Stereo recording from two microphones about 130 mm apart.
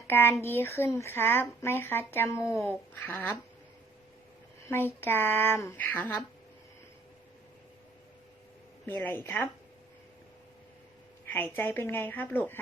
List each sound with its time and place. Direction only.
0.1 s speech: 15° left (ahead or behind)
4.7 s speech: 15° left (ahead or behind)
9.0 s speech: 15° left (ahead or behind)
11.3 s speech: 15° left (ahead or behind)